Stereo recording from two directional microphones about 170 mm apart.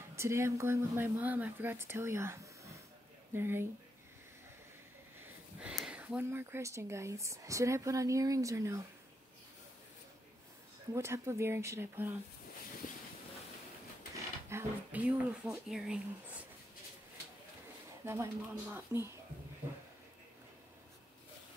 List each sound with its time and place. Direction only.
0.1 s speech: 15° right (ahead or behind)
5.2 s speech: 5° right (ahead or behind)
10.9 s speech: 15° right (ahead or behind)
14.5 s speech: 10° right (ahead or behind)
18.0 s speech: 15° right (ahead or behind)